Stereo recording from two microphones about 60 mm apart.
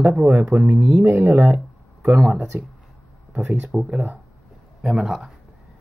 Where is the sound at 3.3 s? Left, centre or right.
Right.